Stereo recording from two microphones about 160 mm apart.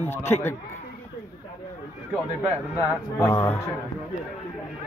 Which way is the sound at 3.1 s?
15° left (ahead or behind).